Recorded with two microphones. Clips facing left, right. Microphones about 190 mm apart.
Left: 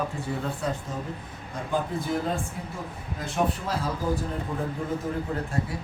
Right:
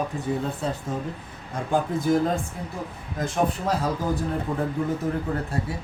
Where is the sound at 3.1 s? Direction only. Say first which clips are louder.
Right 3 dB; 45° right (ahead or behind).